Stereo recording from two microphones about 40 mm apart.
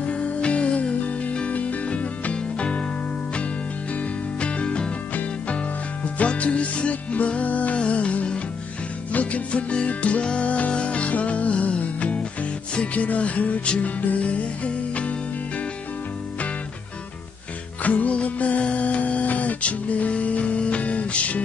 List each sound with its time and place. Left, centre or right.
0.0 s music: left
3.9 s music: left
5.1 s music: left
17.8 s music: left